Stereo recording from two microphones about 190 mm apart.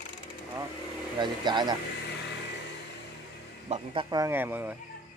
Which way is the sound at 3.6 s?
35° right (ahead or behind).